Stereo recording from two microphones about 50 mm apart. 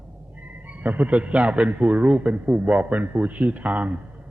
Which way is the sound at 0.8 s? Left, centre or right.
Right.